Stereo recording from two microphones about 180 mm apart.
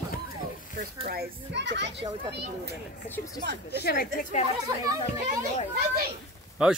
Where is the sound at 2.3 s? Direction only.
65° right (ahead or behind).